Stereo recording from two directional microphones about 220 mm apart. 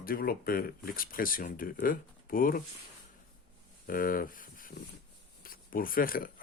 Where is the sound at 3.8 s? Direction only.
40° left (ahead or behind).